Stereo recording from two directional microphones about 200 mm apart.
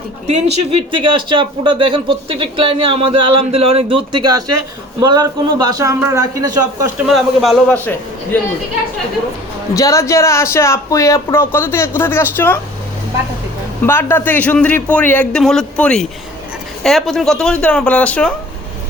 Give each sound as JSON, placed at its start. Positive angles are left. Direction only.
{"t": 0.3, "sound": "speech", "side_deg": -25}
{"t": 7.1, "sound": "speech", "side_deg": 0}
{"t": 9.7, "sound": "speech", "side_deg": 15}
{"t": 13.8, "sound": "speech", "side_deg": 10}